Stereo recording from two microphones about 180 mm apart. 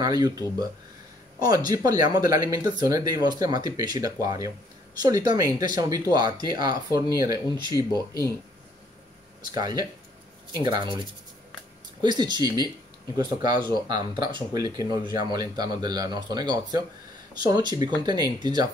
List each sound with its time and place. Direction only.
0.0 s speech: 20° right (ahead or behind)
9.4 s speech: 20° right (ahead or behind)
12.0 s speech: 25° right (ahead or behind)